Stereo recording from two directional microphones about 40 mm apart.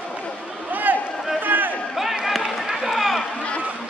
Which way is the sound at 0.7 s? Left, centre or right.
Right.